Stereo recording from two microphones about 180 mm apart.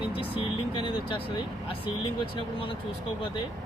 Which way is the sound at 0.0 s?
30° left (ahead or behind).